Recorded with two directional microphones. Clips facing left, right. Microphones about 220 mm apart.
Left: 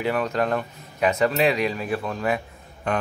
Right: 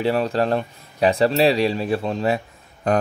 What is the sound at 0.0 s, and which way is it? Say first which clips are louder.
Speech: right 3 dB; 30° right (ahead or behind).